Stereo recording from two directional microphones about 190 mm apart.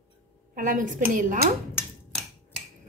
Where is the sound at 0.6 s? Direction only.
45° right (ahead or behind).